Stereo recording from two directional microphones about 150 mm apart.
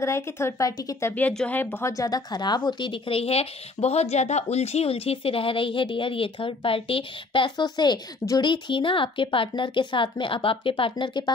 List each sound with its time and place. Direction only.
0.0 s a woman's voice: 20° left (ahead or behind)
1.1 s speech: 10° left (ahead or behind); by 11.3 s 30° left (ahead or behind)